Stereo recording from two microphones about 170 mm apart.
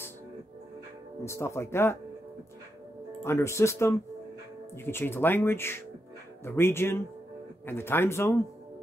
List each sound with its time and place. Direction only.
1.2 s speech: 15° left (ahead or behind)
3.3 s speech: 15° left (ahead or behind)